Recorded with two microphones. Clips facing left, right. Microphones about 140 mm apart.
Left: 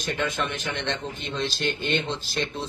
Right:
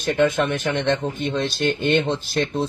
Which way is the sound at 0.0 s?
55° right (ahead or behind).